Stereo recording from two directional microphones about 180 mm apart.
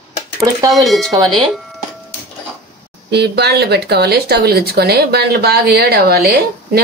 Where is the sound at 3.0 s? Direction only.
65° right (ahead or behind).